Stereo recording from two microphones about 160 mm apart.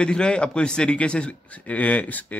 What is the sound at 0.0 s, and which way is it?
A man's voice, 5° left (ahead or behind).